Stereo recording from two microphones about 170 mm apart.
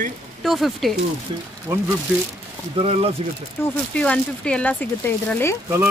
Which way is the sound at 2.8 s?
35° right (ahead or behind).